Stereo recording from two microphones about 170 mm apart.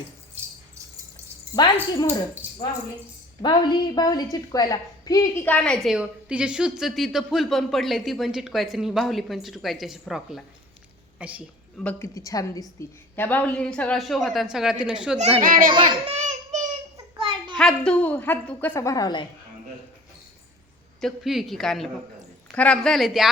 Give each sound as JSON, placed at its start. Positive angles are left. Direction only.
{"t": 1.5, "sound": "a woman's voice", "side_deg": 25}
{"t": 2.4, "sound": "a sound", "side_deg": -10}
{"t": 3.4, "sound": "a woman's voice", "side_deg": 25}
{"t": 5.5, "sound": "a woman's voice", "side_deg": 5}
{"t": 11.8, "sound": "a woman's voice", "side_deg": 10}
{"t": 15.4, "sound": "a child's voice", "side_deg": -55}
{"t": 15.7, "sound": "child singing", "side_deg": -30}
{"t": 17.2, "sound": "children playing", "side_deg": -30}
{"t": 17.6, "sound": "a woman's voice", "side_deg": 5}
{"t": 21.0, "sound": "a woman's voice", "side_deg": 0}